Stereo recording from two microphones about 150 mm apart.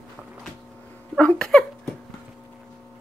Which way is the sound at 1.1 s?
5° left (ahead or behind).